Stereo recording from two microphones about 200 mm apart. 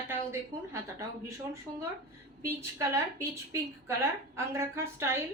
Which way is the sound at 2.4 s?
15° right (ahead or behind).